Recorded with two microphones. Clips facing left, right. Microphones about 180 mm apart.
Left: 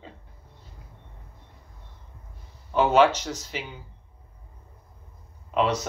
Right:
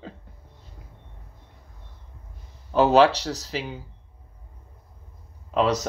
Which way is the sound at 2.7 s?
35° right (ahead or behind).